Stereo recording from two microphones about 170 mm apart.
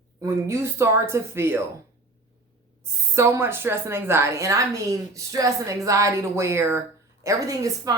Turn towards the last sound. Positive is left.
turn(degrees=-20)  # may be behind; listen again after turning